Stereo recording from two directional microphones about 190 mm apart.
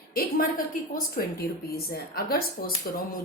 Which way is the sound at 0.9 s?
50° left (ahead or behind).